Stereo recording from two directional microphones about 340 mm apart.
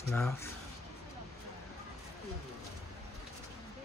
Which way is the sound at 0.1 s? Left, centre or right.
Centre.